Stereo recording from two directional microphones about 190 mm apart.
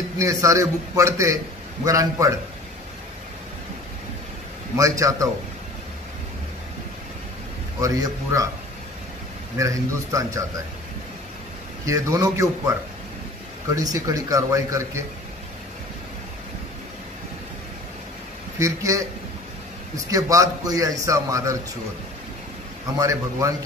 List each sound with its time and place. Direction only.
0.2 s a man's voice: 15° right (ahead or behind)
4.7 s a man's voice: 15° right (ahead or behind)
7.8 s a man's voice: 15° right (ahead or behind)
9.6 s a man's voice: 15° right (ahead or behind)
11.8 s a man's voice: 15° right (ahead or behind)
13.7 s a man's voice: 20° right (ahead or behind)
18.6 s a man's voice: 15° right (ahead or behind)
20.1 s a man's voice: 15° right (ahead or behind)
22.9 s a man's voice: 15° right (ahead or behind)